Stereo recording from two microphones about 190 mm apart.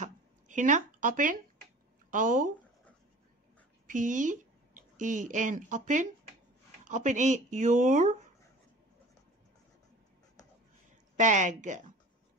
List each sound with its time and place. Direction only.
0.0 s a sound: 40° right (ahead or behind)
2.0 s speech: 45° right (ahead or behind)
3.8 s speech: 40° right (ahead or behind)
11.1 s speech: 40° right (ahead or behind)